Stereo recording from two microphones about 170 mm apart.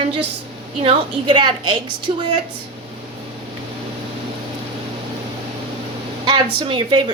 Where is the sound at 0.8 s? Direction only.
25° right (ahead or behind).